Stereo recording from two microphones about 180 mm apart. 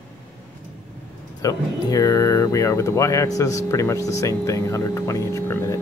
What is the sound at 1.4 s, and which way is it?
Speech, 20° left (ahead or behind).